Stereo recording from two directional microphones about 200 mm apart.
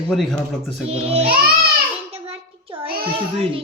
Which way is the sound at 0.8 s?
30° right (ahead or behind).